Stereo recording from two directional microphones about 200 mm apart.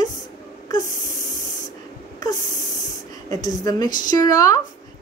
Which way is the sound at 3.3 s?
20° left (ahead or behind).